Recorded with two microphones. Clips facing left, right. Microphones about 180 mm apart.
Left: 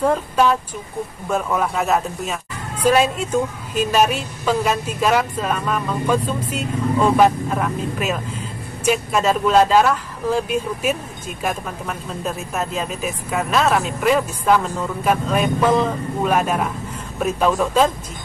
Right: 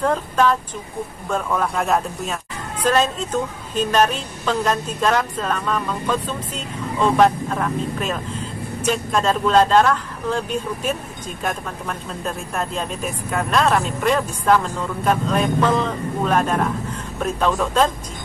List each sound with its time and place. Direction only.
0.0 s a woman's voice: 10° left (ahead or behind)